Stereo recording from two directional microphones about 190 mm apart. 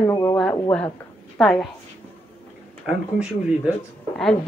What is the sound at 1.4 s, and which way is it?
Speech, 5° left (ahead or behind).